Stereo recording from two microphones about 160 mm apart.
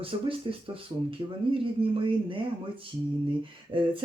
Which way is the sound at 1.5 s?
35° right (ahead or behind).